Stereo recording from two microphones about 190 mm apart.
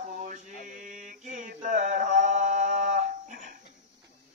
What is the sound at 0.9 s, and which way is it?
Mantra, 40° right (ahead or behind).